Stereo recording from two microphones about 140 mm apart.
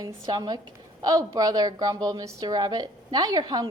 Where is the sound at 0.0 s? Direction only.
30° right (ahead or behind).